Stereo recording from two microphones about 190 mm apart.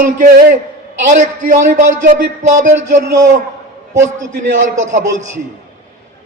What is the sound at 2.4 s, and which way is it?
Music, 40° right (ahead or behind).